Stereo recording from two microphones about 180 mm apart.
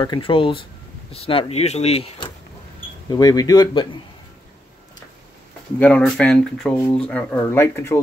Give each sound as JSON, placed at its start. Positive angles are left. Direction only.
{"t": 0.0, "sound": "speech", "side_deg": 25}
{"t": 3.1, "sound": "speech", "side_deg": 20}
{"t": 5.8, "sound": "speech", "side_deg": 5}